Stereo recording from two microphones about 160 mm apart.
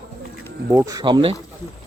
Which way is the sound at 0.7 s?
20° right (ahead or behind).